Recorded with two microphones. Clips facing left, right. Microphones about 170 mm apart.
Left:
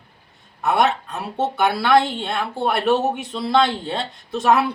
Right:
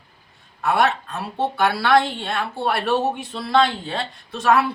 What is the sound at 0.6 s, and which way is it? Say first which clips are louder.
Speech: left 1 dB; 20° left (ahead or behind).